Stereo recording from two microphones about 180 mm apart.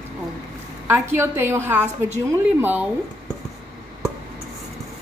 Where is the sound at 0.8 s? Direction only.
15° right (ahead or behind).